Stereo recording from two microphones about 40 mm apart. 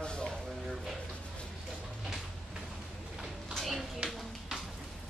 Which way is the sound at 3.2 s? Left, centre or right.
Centre.